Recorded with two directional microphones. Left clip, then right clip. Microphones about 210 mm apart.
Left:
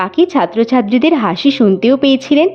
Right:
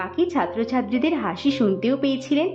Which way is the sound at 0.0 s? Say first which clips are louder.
Left 10 dB; 45° left (ahead or behind).